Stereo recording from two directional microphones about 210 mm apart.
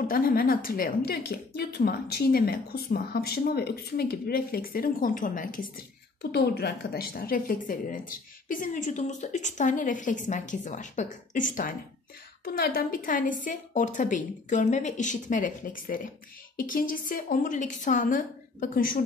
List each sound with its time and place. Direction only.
0.1 s a woman's voice: 45° left (ahead or behind)